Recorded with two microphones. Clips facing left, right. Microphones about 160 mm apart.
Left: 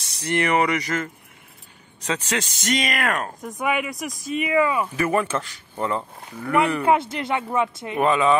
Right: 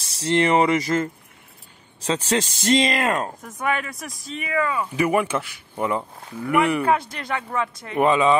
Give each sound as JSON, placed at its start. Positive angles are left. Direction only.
{"t": 0.0, "sound": "speech", "side_deg": -30}
{"t": 3.5, "sound": "speech", "side_deg": 10}
{"t": 3.9, "sound": "speech", "side_deg": 0}
{"t": 4.3, "sound": "speech", "side_deg": 15}
{"t": 4.9, "sound": "speech", "side_deg": -15}
{"t": 6.8, "sound": "speech", "side_deg": 25}
{"t": 8.0, "sound": "speech", "side_deg": -20}